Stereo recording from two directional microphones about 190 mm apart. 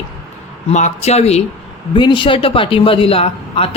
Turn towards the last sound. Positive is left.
turn(degrees=30)  # may be behind; listen again after turning